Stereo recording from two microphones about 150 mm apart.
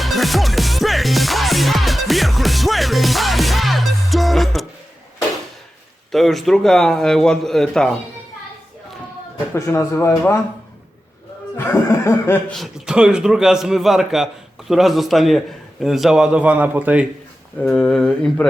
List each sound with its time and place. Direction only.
0.0 s music: centre (ahead or behind)
6.1 s a man's voice: centre (ahead or behind)
9.6 s speech: 15° left (ahead or behind)
11.5 s speech: 15° left (ahead or behind)
12.5 s a man's voice: centre (ahead or behind)
17.6 s a man's voice: 5° left (ahead or behind)